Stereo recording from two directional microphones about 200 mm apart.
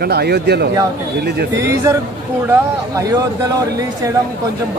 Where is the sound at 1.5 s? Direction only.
15° right (ahead or behind).